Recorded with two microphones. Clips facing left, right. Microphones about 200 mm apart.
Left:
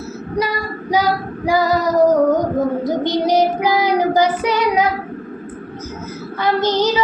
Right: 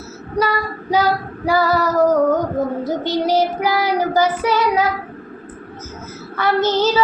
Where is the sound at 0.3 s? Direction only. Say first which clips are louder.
Right 1 dB; 15° left (ahead or behind).